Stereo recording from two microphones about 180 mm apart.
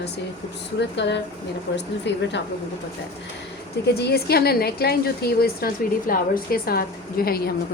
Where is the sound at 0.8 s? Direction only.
75° left (ahead or behind).